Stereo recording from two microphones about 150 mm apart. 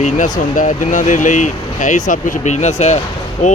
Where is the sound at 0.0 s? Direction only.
60° left (ahead or behind).